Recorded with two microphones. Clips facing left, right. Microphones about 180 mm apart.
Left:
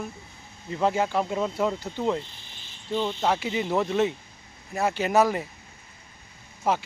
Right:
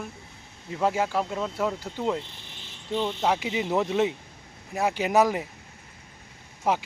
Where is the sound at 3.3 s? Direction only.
15° right (ahead or behind).